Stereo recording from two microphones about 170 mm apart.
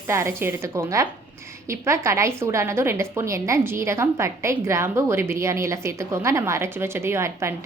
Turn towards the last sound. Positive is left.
turn(degrees=-15)  # may be behind; listen again after turning